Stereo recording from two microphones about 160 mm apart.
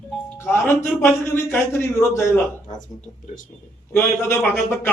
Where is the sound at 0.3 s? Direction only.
15° left (ahead or behind).